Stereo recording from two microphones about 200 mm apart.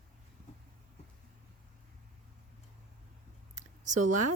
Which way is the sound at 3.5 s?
40° right (ahead or behind).